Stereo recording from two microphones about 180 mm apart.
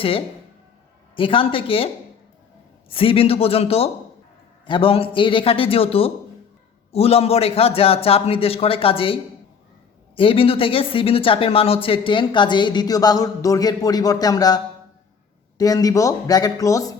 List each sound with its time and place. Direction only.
0.0 s a man's voice: 30° left (ahead or behind)
2.9 s a man's voice: 30° left (ahead or behind)
10.2 s speech: 30° left (ahead or behind)